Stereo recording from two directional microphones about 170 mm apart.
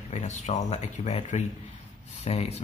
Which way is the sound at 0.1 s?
45° left (ahead or behind).